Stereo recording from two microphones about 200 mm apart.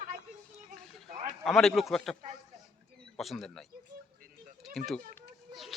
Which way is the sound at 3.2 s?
Centre (ahead or behind).